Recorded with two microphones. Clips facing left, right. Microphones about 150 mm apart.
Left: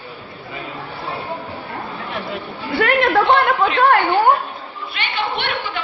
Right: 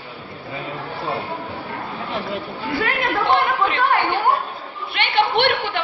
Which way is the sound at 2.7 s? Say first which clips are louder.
Left 7 dB; 65° left (ahead or behind).